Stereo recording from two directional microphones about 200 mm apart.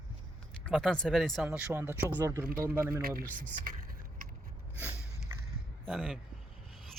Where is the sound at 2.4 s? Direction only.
45° right (ahead or behind).